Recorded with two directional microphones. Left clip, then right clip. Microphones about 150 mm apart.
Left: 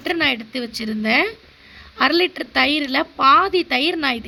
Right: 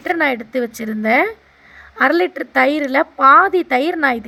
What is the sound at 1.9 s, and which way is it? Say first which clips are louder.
Speech: right 2 dB; 40° right (ahead or behind).